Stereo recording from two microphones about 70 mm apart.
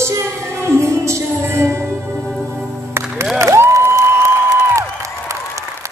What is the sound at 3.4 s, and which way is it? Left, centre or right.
Music, right.